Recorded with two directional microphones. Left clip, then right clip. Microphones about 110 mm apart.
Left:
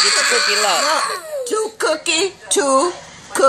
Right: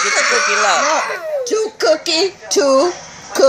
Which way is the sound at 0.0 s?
40° left (ahead or behind).